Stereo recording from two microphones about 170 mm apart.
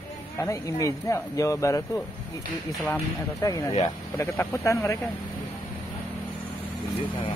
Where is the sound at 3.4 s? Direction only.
20° left (ahead or behind).